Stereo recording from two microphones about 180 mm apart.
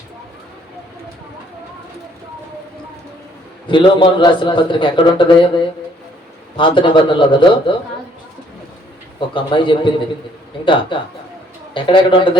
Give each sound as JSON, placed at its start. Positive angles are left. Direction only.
{"t": 3.7, "sound": "a man's voice", "side_deg": 25}
{"t": 9.3, "sound": "a man's voice", "side_deg": 25}
{"t": 10.9, "sound": "a man's voice", "side_deg": 25}